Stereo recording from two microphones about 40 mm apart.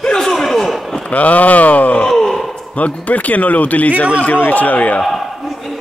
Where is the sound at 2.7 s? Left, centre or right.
Left.